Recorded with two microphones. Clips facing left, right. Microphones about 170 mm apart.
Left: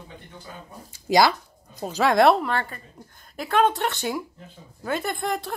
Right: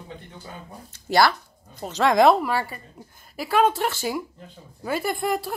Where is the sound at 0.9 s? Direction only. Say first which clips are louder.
Left 1 dB; 15° left (ahead or behind).